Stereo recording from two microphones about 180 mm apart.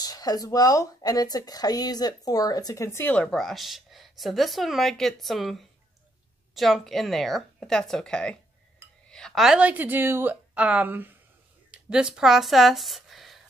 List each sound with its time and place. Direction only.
0.0 s a woman's voice: 20° left (ahead or behind); by 13.4 s centre (ahead or behind)